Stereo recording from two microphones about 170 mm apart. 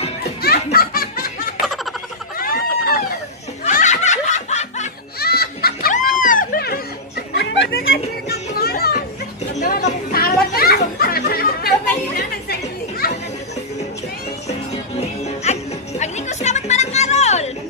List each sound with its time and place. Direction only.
0.4 s music: 65° left (ahead or behind)
2.3 s chicken: 60° left (ahead or behind)
3.6 s snicker: 45° left (ahead or behind)
5.2 s a sound: 65° left (ahead or behind)
7.3 s children playing: 85° left; by 9.0 s 65° left (ahead or behind)
10.1 s children playing: 60° left (ahead or behind)
11.0 s music: 60° left (ahead or behind)
13.0 s chatter: 65° left (ahead or behind)
15.0 s music: 40° left (ahead or behind)